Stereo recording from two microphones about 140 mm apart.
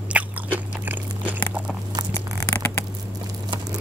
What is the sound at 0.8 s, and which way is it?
Biting, 15° right (ahead or behind).